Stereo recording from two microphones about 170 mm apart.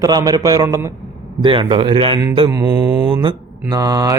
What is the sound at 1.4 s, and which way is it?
Speech, 30° right (ahead or behind).